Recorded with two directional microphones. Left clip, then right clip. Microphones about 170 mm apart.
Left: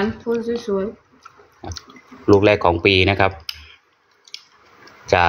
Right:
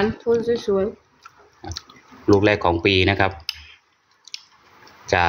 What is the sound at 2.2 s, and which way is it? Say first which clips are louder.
Speech: left 3 dB; centre (ahead or behind).